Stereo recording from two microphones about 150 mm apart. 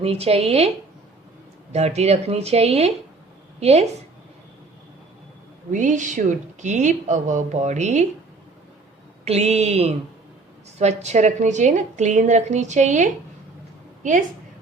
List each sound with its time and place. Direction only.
0.0 s a woman's voice: 40° right (ahead or behind)
1.7 s a woman's voice: 45° right (ahead or behind)
5.7 s a woman's voice: 55° right (ahead or behind)
9.2 s a woman's voice: 45° right (ahead or behind)